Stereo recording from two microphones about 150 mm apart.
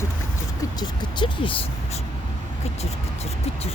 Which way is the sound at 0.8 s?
35° left (ahead or behind).